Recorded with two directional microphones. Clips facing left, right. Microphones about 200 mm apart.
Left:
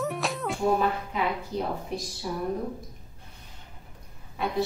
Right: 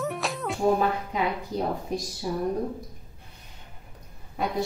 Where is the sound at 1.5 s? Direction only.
40° right (ahead or behind).